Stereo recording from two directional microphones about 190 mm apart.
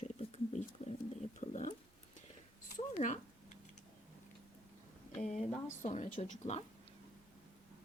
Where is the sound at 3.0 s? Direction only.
40° left (ahead or behind).